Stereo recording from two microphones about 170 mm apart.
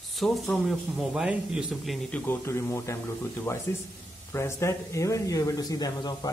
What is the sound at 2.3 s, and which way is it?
Speech, 15° left (ahead or behind).